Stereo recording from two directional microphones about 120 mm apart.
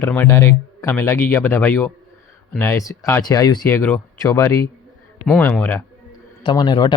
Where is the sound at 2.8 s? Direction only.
30° left (ahead or behind).